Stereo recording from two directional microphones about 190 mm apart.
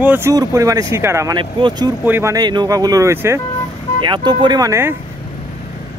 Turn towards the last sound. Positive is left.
turn(degrees=-15)  # may be behind; listen again after turning